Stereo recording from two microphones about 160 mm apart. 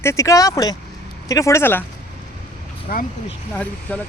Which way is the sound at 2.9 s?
60° left (ahead or behind).